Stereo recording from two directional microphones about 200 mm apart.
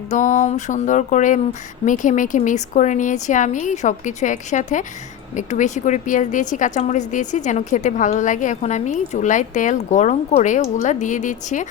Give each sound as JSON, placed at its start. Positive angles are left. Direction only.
{"t": 0.1, "sound": "a woman's voice", "side_deg": 40}